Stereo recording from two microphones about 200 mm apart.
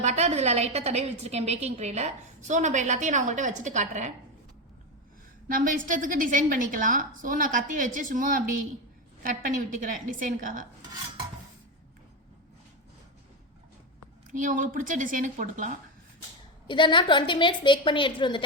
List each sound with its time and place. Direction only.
0.0 s a woman's voice: 35° right (ahead or behind)
5.5 s a woman's voice: 40° right (ahead or behind)
14.3 s a woman's voice: 40° right (ahead or behind)
16.6 s a woman's voice: 25° left (ahead or behind)